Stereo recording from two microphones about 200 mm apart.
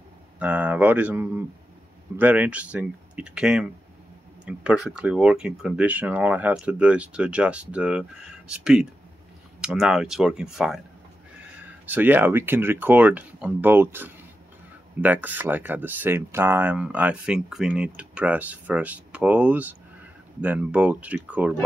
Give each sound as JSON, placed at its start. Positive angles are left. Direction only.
{"t": 0.4, "sound": "speech", "side_deg": -10}
{"t": 11.8, "sound": "speech", "side_deg": -10}